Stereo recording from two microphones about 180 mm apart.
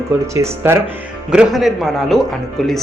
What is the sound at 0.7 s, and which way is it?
Speech, 10° right (ahead or behind).